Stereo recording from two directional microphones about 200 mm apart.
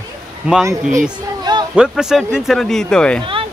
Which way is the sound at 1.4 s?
20° right (ahead or behind).